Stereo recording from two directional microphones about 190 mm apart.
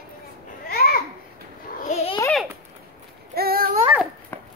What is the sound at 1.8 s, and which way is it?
Babbling, 35° left (ahead or behind).